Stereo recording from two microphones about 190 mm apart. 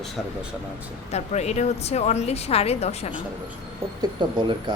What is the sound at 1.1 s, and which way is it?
A woman's voice, 35° left (ahead or behind).